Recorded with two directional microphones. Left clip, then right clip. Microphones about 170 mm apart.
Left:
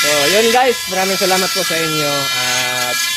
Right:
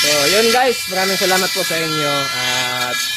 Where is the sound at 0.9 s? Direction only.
Centre (ahead or behind).